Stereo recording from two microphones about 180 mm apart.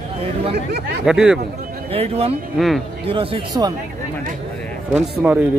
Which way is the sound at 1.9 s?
35° right (ahead or behind).